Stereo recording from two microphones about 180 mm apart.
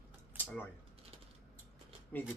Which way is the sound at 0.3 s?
10° left (ahead or behind).